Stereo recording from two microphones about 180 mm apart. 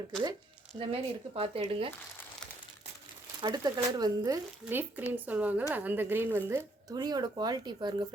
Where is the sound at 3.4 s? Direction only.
20° right (ahead or behind).